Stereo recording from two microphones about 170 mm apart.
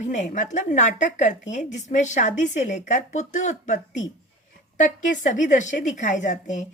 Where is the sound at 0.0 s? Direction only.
45° left (ahead or behind).